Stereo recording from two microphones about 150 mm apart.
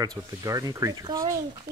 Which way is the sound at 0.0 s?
25° right (ahead or behind).